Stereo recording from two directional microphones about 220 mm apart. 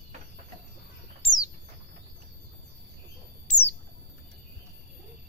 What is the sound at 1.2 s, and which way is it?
Bird, 15° left (ahead or behind).